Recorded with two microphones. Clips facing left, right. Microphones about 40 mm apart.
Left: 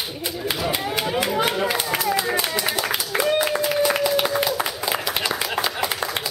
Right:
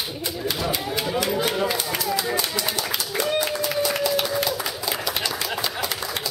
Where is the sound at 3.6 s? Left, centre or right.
Centre.